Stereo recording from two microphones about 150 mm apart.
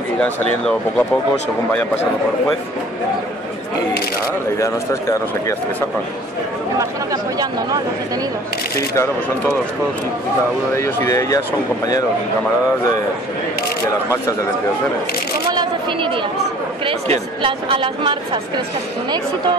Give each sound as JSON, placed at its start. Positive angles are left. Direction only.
{"t": 0.2, "sound": "speech", "side_deg": 10}
{"t": 4.6, "sound": "speech", "side_deg": 20}
{"t": 6.8, "sound": "speech", "side_deg": -25}
{"t": 8.7, "sound": "speech", "side_deg": 20}
{"t": 10.8, "sound": "speech", "side_deg": 20}
{"t": 15.5, "sound": "single-lens reflex camera", "side_deg": -30}
{"t": 16.8, "sound": "speech", "side_deg": -35}